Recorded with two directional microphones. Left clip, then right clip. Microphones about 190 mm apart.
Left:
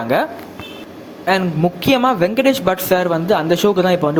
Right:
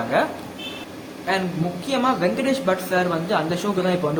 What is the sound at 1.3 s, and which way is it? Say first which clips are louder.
Speech: left 7 dB; 40° left (ahead or behind).